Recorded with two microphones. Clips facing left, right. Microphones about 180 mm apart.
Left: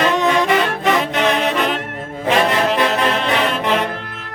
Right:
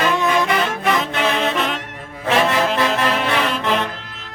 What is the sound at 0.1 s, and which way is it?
Music, 20° left (ahead or behind).